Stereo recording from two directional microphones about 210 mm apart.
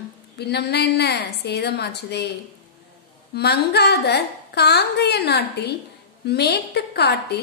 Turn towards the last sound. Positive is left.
turn(degrees=50)  # may be behind; listen again after turning